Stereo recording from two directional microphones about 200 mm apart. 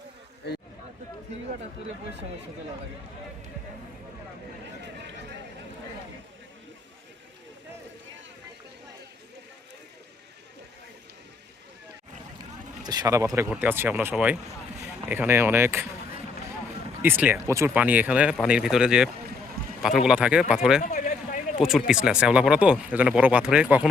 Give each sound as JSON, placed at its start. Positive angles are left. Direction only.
{"t": 12.8, "sound": "speech", "side_deg": -20}
{"t": 17.0, "sound": "speech", "side_deg": -10}
{"t": 20.8, "sound": "a sound", "side_deg": 35}
{"t": 21.6, "sound": "speech", "side_deg": 0}